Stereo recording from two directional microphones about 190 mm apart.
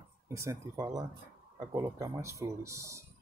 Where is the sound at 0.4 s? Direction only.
15° right (ahead or behind).